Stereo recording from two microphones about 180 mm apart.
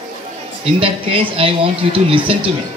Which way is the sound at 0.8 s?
30° right (ahead or behind).